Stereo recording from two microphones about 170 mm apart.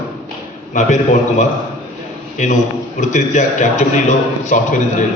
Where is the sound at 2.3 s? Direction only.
45° left (ahead or behind).